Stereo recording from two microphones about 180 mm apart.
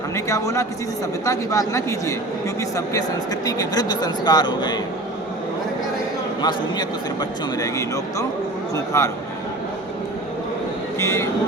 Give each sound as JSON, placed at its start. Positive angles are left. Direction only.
{"t": 0.3, "sound": "a man's voice", "side_deg": 15}
{"t": 6.4, "sound": "a man's voice", "side_deg": 20}
{"t": 11.0, "sound": "speech", "side_deg": 15}